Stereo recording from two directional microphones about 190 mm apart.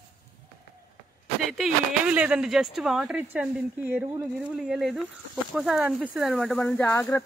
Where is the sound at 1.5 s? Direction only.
5° right (ahead or behind).